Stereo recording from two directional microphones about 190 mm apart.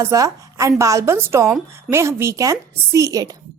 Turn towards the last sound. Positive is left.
turn(degrees=-15)  # may be behind; listen again after turning